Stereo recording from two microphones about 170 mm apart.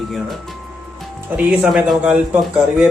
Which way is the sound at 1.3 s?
5° right (ahead or behind).